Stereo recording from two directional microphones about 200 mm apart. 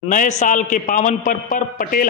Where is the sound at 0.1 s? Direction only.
40° left (ahead or behind).